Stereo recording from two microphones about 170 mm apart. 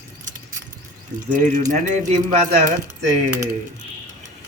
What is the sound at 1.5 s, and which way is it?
Speech, 45° right (ahead or behind).